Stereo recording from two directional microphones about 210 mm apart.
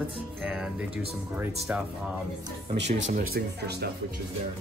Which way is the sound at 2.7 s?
55° right (ahead or behind).